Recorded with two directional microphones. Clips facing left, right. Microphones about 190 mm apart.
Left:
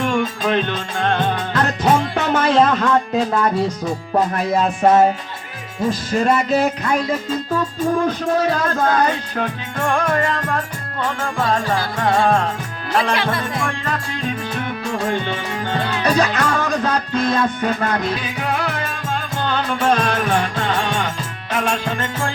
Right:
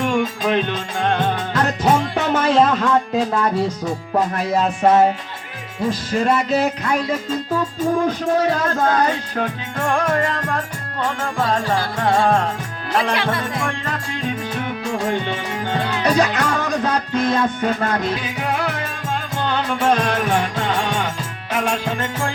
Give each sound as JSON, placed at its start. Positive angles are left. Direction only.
{"t": 0.0, "sound": "music", "side_deg": -15}
{"t": 4.4, "sound": "music", "side_deg": 50}
{"t": 7.5, "sound": "music", "side_deg": -15}
{"t": 13.6, "sound": "music", "side_deg": -25}
{"t": 18.2, "sound": "music", "side_deg": -20}